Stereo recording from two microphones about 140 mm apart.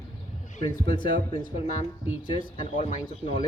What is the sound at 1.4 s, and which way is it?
Speech, 65° left (ahead or behind).